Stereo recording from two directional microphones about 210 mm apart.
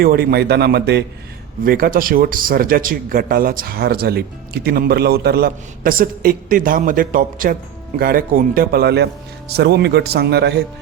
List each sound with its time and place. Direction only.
0.0 s speech: 45° right (ahead or behind)